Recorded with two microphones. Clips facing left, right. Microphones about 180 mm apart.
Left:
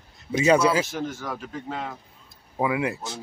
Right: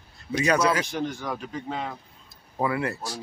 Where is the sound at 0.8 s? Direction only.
5° left (ahead or behind).